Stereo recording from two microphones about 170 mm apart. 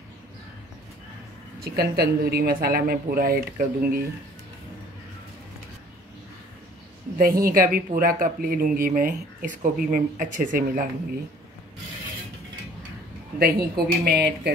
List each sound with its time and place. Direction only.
1.6 s speech: 65° right (ahead or behind)
7.2 s speech: 60° right (ahead or behind)
13.4 s speech: 60° right (ahead or behind)